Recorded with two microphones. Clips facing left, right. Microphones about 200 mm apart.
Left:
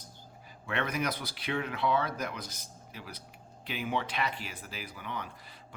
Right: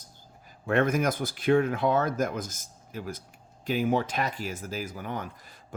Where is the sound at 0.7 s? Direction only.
45° right (ahead or behind).